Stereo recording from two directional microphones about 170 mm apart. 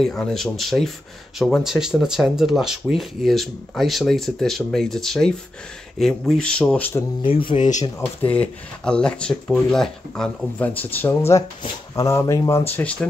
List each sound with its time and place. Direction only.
0.0 s speech: 5° left (ahead or behind)
7.2 s speech: 30° left (ahead or behind)
7.5 s speech: 45° left (ahead or behind)
8.3 s speech: 5° left (ahead or behind)